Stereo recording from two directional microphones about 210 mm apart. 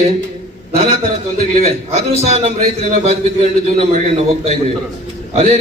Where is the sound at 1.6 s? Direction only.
30° right (ahead or behind).